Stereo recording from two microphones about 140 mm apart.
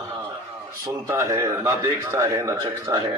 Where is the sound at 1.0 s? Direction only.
20° right (ahead or behind).